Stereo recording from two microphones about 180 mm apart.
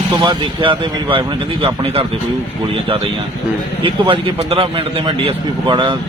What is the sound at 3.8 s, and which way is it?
A man's voice, 30° right (ahead or behind).